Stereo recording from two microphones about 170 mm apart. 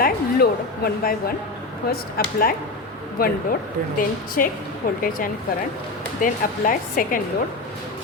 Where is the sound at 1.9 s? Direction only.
60° left (ahead or behind).